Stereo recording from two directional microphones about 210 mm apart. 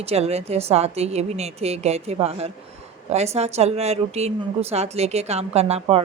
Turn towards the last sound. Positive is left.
turn(degrees=-30)  # may be behind; listen again after turning